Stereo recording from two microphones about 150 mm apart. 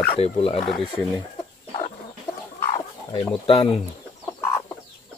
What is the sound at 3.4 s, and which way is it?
Speech, 35° left (ahead or behind).